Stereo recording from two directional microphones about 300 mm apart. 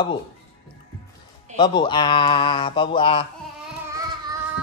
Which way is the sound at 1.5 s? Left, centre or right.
Centre.